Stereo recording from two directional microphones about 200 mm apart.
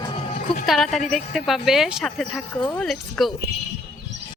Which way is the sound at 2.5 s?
25° left (ahead or behind).